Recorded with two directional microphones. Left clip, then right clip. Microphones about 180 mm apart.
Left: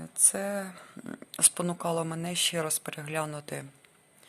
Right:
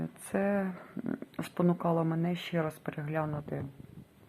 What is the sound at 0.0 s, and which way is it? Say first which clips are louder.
Speech: left 1 dB; 15° left (ahead or behind).